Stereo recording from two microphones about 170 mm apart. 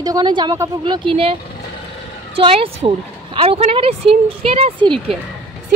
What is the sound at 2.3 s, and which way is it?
Speech, 30° right (ahead or behind).